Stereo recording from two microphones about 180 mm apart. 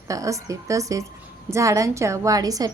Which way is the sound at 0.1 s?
20° right (ahead or behind).